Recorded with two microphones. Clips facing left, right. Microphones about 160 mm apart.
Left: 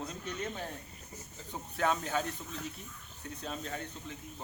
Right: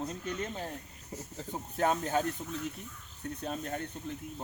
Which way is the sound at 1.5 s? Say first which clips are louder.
Right 2 dB; 45° right (ahead or behind).